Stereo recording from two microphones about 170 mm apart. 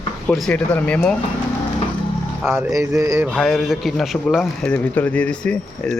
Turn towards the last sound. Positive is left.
turn(degrees=5)  # may be behind; listen again after turning